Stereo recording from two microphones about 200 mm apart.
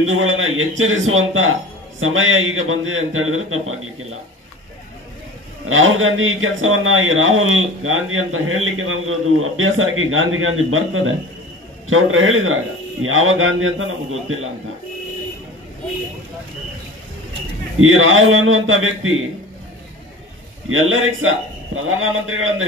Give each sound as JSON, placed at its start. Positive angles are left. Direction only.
{"t": 0.0, "sound": "a man's voice", "side_deg": -80}
{"t": 5.7, "sound": "a man's voice", "side_deg": -85}
{"t": 17.7, "sound": "a man's voice", "side_deg": -90}
{"t": 20.6, "sound": "a man's voice", "side_deg": -85}